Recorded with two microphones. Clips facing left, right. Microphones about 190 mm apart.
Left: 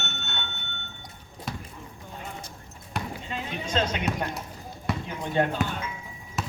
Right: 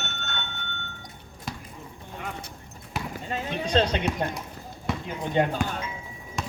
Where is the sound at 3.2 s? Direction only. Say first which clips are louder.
Right 3 dB; 35° right (ahead or behind).